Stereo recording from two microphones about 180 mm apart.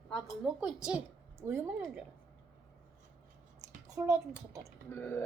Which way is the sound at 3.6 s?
20° right (ahead or behind).